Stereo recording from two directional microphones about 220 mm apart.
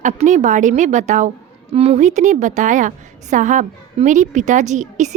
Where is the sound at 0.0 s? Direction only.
35° right (ahead or behind).